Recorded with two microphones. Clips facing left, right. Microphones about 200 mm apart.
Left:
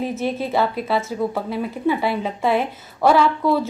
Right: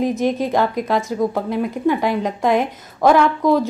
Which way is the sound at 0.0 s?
15° right (ahead or behind).